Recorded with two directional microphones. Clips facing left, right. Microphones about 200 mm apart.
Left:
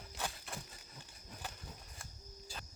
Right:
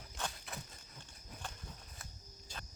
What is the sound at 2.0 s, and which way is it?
Cricket, 5° left (ahead or behind).